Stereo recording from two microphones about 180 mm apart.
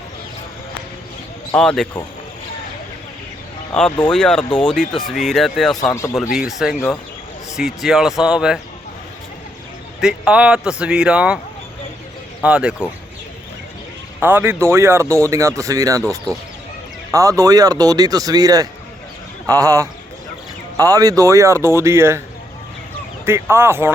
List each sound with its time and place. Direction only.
1.5 s speech: 5° left (ahead or behind)
3.7 s speech: 5° left (ahead or behind)
5.8 s speech: 15° left (ahead or behind)
6.6 s speech: centre (ahead or behind)
10.0 s speech: 5° right (ahead or behind)
12.4 s speech: 5° right (ahead or behind)
14.2 s speech: 10° right (ahead or behind)
23.2 s speech: 15° right (ahead or behind)